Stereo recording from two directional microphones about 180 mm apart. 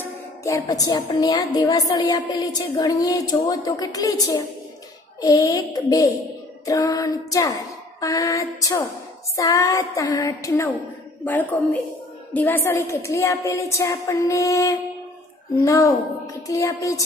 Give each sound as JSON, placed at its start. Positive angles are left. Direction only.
{"t": 0.0, "sound": "a woman's voice", "side_deg": 15}